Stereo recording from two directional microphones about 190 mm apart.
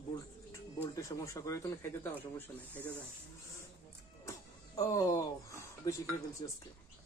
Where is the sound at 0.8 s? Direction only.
15° left (ahead or behind).